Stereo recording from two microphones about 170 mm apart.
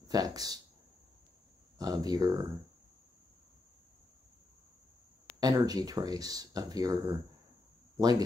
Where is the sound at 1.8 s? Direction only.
20° right (ahead or behind).